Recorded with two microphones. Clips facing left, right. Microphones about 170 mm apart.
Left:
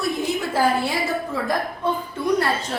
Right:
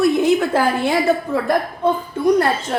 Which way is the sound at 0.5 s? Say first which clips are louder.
Right 4 dB; 60° right (ahead or behind).